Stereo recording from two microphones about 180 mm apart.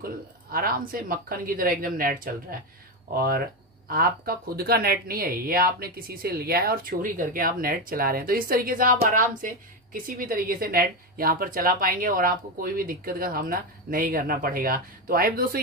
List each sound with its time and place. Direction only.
0.0 s speech: 55° right (ahead or behind)